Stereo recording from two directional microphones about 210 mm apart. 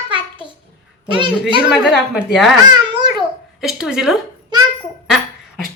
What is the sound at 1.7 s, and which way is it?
Speech, centre (ahead or behind).